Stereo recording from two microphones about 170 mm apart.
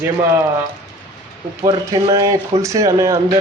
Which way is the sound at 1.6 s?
20° right (ahead or behind).